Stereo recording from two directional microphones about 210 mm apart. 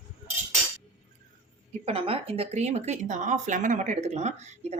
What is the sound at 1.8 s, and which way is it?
Speech, 25° right (ahead or behind).